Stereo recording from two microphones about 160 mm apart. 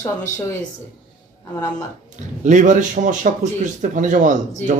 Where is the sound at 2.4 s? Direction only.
50° right (ahead or behind).